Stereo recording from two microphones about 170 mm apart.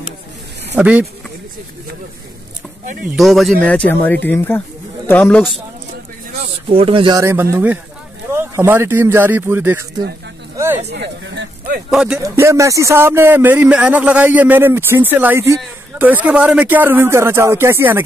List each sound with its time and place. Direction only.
0.7 s speech: 10° right (ahead or behind)
3.1 s speech: centre (ahead or behind)
6.7 s speech: 35° right (ahead or behind)
7.2 s speech: 15° right (ahead or behind)
10.9 s speech: 85° right
11.9 s speech: 5° right (ahead or behind)
12.2 s speech: 15° right (ahead or behind)